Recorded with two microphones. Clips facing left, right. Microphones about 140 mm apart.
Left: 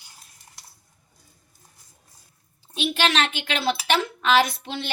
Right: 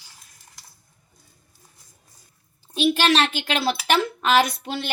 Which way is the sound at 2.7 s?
40° right (ahead or behind).